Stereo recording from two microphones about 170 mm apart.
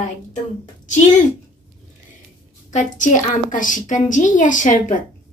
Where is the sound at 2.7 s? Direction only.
50° left (ahead or behind).